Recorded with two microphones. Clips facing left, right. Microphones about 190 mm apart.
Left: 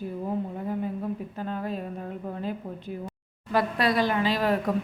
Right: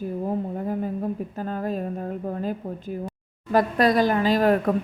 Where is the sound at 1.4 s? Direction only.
45° right (ahead or behind).